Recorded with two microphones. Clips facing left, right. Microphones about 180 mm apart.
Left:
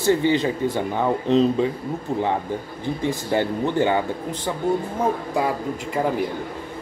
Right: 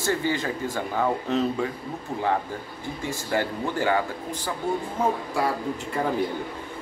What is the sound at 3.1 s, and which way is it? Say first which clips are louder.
A man's voice: left 4 dB; 20° left (ahead or behind).